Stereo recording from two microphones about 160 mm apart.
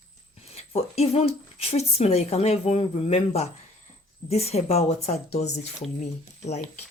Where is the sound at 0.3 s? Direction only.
40° left (ahead or behind).